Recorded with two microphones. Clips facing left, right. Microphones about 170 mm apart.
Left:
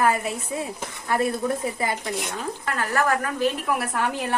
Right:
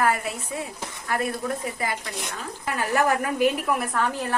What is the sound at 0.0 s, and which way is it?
Speech, 25° left (ahead or behind).